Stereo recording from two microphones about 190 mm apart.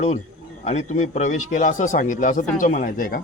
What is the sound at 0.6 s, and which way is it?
A man's voice, 35° left (ahead or behind).